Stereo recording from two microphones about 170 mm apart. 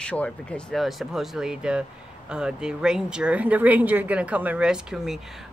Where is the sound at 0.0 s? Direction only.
5° left (ahead or behind).